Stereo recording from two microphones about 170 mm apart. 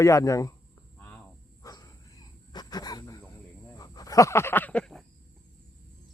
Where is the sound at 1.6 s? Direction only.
20° left (ahead or behind); by 5.0 s 5° left (ahead or behind).